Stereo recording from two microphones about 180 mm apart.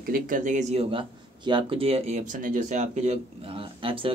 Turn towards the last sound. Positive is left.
turn(degrees=-30)  # may be behind; listen again after turning